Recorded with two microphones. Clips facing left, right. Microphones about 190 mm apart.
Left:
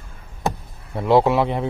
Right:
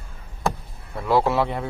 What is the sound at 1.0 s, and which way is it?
Speech, 20° left (ahead or behind).